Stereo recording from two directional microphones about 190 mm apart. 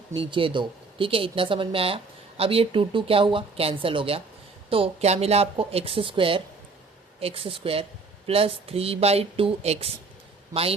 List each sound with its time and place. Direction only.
0.1 s speech: 25° right (ahead or behind)